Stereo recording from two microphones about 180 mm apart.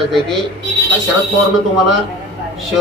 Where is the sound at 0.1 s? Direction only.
Centre (ahead or behind).